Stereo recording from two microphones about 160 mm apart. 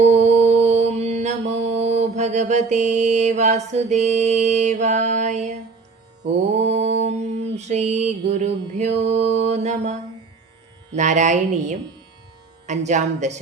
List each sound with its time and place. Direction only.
0.0 s mantra: 45° right (ahead or behind)